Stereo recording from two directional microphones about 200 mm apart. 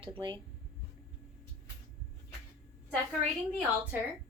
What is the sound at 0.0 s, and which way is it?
Speech, 25° right (ahead or behind).